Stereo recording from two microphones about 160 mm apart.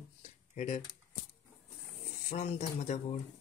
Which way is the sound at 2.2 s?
45° left (ahead or behind).